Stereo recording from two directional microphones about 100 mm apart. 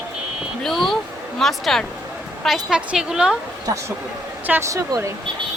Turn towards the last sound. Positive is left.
turn(degrees=-30)  # may be behind; listen again after turning